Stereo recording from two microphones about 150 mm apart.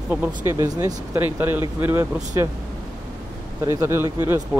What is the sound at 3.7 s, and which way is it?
Speech, 20° right (ahead or behind).